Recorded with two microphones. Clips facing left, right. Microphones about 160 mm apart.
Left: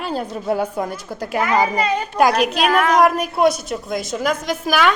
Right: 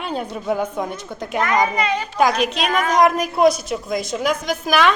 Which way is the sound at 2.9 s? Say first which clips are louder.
Left 1 dB; 5° left (ahead or behind).